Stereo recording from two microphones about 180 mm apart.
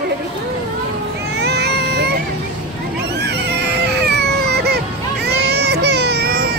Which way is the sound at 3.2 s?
65° right (ahead or behind).